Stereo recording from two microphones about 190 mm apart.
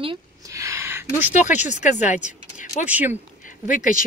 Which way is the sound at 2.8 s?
10° right (ahead or behind).